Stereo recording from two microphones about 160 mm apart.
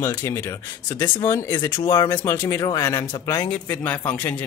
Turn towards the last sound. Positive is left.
turn(degrees=10)  # may be behind; listen again after turning